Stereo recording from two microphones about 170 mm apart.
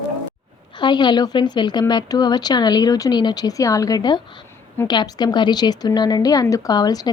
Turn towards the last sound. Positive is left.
turn(degrees=20)  # may be behind; listen again after turning